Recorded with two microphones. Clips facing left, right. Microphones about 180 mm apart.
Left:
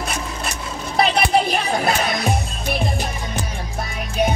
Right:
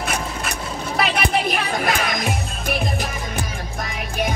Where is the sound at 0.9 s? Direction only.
35° left (ahead or behind).